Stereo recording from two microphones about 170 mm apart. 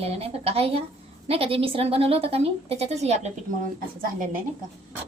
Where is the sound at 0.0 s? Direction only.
35° right (ahead or behind).